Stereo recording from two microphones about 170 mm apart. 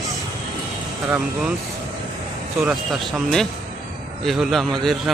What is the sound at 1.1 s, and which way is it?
Speech, 5° right (ahead or behind).